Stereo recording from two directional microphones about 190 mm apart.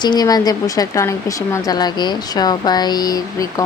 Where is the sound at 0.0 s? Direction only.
20° left (ahead or behind).